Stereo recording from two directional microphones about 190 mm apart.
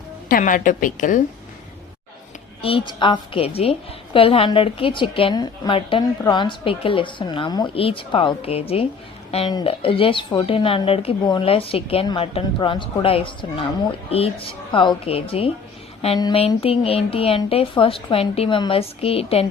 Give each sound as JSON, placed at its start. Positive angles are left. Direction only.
{"t": 0.3, "sound": "a woman's voice", "side_deg": 45}
{"t": 2.6, "sound": "a woman's voice", "side_deg": 30}